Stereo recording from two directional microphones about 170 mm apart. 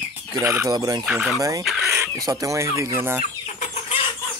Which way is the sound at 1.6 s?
Centre (ahead or behind).